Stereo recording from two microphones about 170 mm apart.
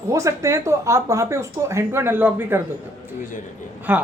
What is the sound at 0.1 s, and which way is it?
A woman's voice, 20° right (ahead or behind).